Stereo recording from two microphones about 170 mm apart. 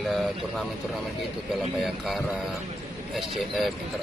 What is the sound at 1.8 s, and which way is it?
Speech, centre (ahead or behind).